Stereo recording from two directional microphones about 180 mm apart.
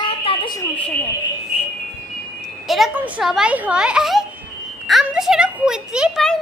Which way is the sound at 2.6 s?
Centre (ahead or behind).